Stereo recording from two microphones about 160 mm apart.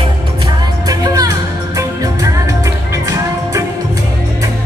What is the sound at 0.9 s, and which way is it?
Music, 25° right (ahead or behind).